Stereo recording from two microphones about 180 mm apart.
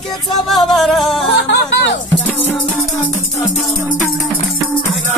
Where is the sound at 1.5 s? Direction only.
80° left.